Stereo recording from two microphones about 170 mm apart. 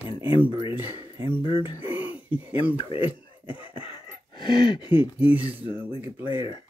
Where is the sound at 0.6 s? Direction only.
30° left (ahead or behind).